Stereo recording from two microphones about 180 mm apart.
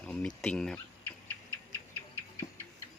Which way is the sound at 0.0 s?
5° left (ahead or behind).